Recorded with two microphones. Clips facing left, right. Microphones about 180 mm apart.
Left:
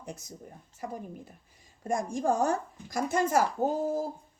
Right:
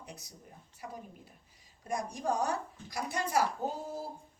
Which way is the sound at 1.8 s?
50° left (ahead or behind).